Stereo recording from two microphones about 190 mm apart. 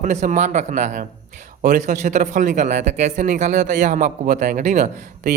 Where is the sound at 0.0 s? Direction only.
40° right (ahead or behind).